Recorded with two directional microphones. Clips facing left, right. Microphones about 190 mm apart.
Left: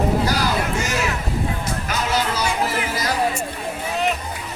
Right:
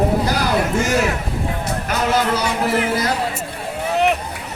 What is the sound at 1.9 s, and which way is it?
Music, 55° right (ahead or behind).